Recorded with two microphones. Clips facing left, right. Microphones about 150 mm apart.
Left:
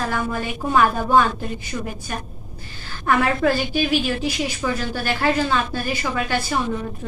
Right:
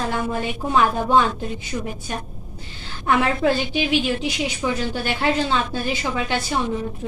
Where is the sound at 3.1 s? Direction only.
20° right (ahead or behind).